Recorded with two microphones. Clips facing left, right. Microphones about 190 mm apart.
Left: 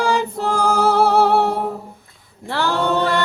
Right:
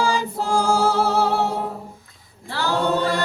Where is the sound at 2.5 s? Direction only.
60° left (ahead or behind).